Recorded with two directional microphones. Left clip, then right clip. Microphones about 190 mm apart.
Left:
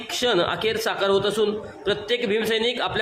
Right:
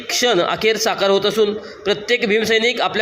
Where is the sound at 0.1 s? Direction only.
15° right (ahead or behind).